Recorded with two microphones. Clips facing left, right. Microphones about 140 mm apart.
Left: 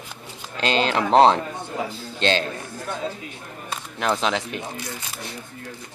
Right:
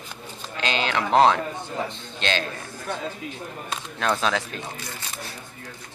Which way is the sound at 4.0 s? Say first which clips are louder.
Left 1 dB; 20° left (ahead or behind).